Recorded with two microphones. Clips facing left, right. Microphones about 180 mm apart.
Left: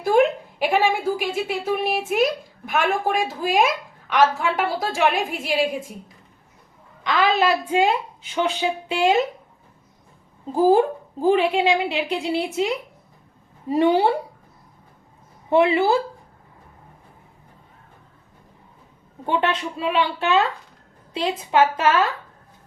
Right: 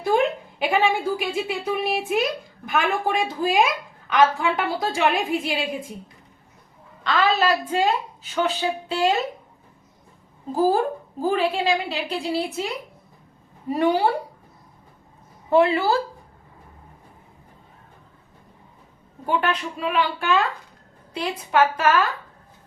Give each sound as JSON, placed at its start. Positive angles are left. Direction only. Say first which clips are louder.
{"t": 0.0, "sound": "a woman's voice", "louder": "left 3 dB", "side_deg": 0}
{"t": 7.0, "sound": "a woman's voice", "louder": "left 1 dB", "side_deg": 10}
{"t": 10.5, "sound": "a woman's voice", "louder": "left 4 dB", "side_deg": 20}
{"t": 15.4, "sound": "a woman's voice", "louder": "left 1 dB", "side_deg": 20}
{"t": 19.2, "sound": "a woman's voice", "louder": "left 1 dB", "side_deg": 25}